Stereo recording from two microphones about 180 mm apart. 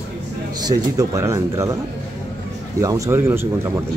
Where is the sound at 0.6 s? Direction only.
20° right (ahead or behind).